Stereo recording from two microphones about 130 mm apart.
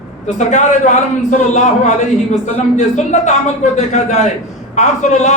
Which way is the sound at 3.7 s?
60° left (ahead or behind).